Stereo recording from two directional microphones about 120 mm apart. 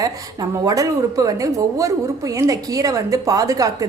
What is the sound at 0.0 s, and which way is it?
A woman's voice, 30° right (ahead or behind).